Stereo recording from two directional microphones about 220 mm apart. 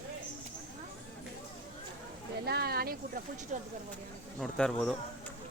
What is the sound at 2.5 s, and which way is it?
Speech, 45° right (ahead or behind).